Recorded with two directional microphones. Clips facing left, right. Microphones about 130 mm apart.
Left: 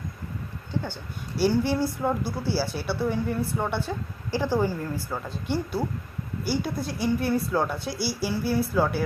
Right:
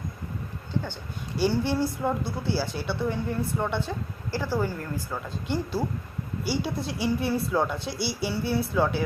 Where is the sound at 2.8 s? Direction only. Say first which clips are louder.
Left 2 dB; 5° left (ahead or behind).